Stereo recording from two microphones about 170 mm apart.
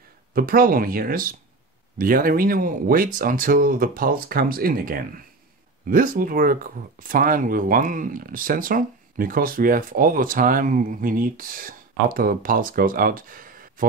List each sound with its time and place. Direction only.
0.3 s speech: 60° right (ahead or behind)